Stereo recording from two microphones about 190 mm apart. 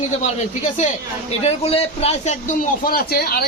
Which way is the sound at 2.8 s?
55° left (ahead or behind).